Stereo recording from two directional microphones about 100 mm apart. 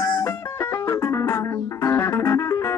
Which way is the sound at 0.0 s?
30° left (ahead or behind).